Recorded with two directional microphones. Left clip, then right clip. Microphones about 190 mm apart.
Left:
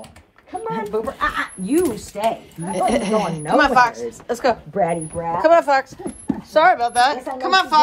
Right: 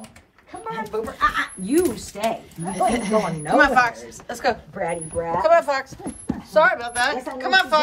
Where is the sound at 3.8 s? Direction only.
35° left (ahead or behind); by 6.0 s 55° left (ahead or behind).